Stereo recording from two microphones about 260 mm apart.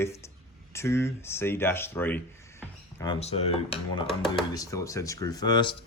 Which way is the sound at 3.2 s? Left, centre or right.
Left.